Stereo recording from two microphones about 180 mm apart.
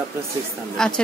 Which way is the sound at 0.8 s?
5° left (ahead or behind).